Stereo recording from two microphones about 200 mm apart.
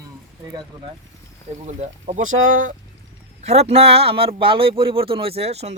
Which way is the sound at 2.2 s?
80° right.